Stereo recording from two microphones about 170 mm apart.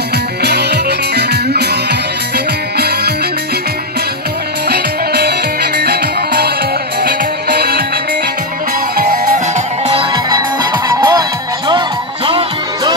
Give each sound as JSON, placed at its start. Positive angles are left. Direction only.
{"t": 0.4, "sound": "music", "side_deg": -75}
{"t": 4.6, "sound": "music", "side_deg": -70}
{"t": 10.1, "sound": "music", "side_deg": -25}